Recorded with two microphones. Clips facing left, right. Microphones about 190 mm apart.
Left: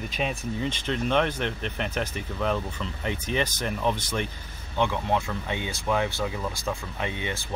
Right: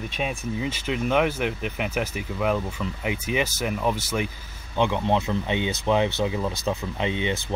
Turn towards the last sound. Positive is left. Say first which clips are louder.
# right 6 dB
turn(degrees=-20)  # may be behind; listen again after turning